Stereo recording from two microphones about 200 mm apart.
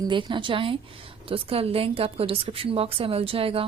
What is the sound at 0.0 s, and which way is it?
A woman's voice, 20° right (ahead or behind).